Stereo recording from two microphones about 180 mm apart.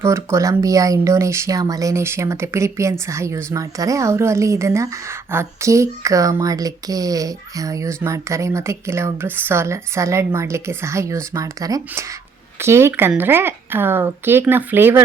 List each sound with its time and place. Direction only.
0.0 s speech: 15° right (ahead or behind)